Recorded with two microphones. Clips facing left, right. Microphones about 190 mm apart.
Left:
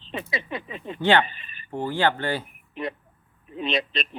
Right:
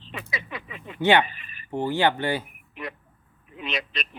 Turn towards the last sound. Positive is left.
turn(degrees=25)  # may be behind; listen again after turning